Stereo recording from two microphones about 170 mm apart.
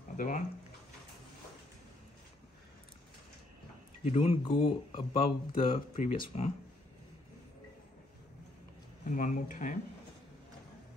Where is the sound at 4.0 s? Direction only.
40° left (ahead or behind).